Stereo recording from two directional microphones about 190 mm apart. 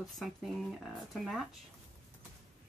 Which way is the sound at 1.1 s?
Centre (ahead or behind).